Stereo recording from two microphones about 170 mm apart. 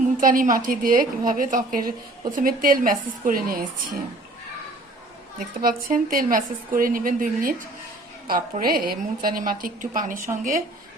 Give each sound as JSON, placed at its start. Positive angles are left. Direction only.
{"t": 0.2, "sound": "a woman's voice", "side_deg": -50}
{"t": 5.6, "sound": "a woman's voice", "side_deg": -60}